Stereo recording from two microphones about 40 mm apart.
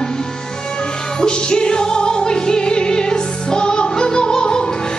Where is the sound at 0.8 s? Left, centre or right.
Centre.